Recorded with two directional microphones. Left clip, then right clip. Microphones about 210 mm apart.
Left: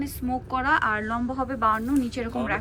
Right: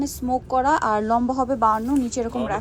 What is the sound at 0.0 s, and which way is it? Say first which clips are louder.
A woman's voice: right 5 dB; 20° right (ahead or behind).